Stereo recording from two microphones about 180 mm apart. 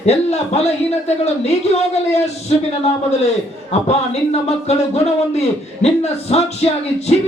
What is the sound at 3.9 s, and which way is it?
Speech, 35° left (ahead or behind).